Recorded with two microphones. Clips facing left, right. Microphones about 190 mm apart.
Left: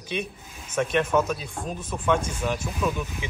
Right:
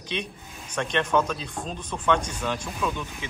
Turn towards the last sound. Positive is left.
turn(degrees=10)  # may be behind; listen again after turning